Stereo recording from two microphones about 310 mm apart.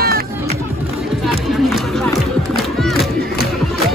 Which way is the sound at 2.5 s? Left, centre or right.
Centre.